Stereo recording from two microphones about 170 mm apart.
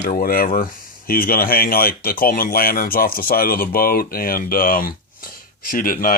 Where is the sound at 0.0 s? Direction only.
60° left (ahead or behind).